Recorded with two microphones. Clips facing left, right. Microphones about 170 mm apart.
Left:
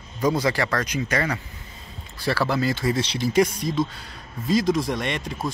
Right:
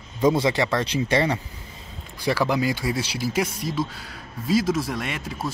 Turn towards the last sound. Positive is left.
turn(degrees=-5)  # may be behind; listen again after turning